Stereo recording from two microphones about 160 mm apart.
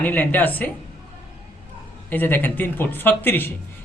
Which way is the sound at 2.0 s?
10° left (ahead or behind).